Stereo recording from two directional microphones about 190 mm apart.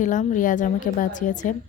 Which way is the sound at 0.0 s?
40° left (ahead or behind).